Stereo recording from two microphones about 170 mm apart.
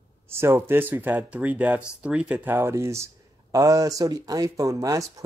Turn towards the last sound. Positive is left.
turn(degrees=-20)  # may be behind; listen again after turning